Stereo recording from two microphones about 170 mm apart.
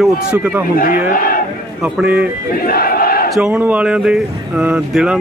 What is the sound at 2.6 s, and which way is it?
Battle cry, 60° left (ahead or behind).